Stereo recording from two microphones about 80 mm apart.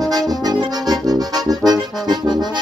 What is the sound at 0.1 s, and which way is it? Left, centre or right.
Accordion, right.